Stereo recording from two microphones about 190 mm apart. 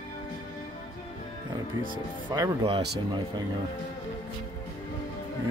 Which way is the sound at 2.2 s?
20° right (ahead or behind).